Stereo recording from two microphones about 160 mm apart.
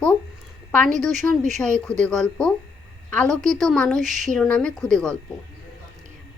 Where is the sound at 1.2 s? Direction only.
10° left (ahead or behind).